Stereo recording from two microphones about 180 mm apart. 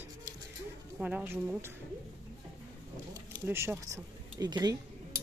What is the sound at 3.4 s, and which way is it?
Speech, 15° right (ahead or behind).